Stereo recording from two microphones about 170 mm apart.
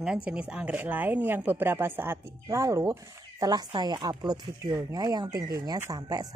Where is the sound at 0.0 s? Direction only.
5° right (ahead or behind).